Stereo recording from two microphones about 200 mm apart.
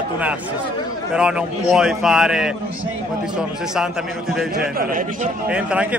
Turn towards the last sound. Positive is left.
turn(degrees=-5)  # may be behind; listen again after turning